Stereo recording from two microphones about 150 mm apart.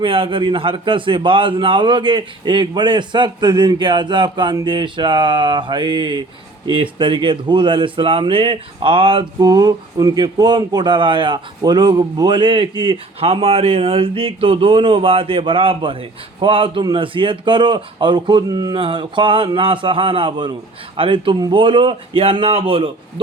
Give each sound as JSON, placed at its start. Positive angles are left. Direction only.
{"t": 0.0, "sound": "speech", "side_deg": -35}